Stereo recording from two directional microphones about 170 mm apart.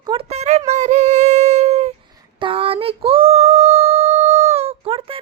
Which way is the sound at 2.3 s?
30° right (ahead or behind).